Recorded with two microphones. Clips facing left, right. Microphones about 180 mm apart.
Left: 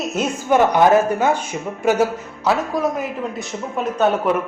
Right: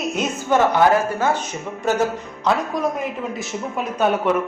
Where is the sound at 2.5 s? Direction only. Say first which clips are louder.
Left 1 dB; centre (ahead or behind).